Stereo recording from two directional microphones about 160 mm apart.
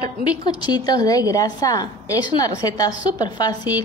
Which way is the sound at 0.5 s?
25° left (ahead or behind).